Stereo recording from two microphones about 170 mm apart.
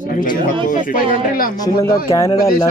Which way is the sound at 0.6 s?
50° left (ahead or behind).